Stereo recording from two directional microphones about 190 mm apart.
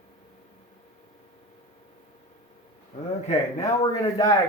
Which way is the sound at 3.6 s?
20° left (ahead or behind).